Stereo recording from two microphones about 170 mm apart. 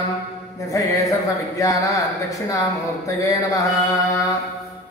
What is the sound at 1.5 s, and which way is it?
Speech, 20° left (ahead or behind).